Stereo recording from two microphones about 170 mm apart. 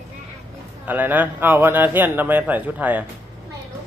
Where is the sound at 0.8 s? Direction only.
10° right (ahead or behind).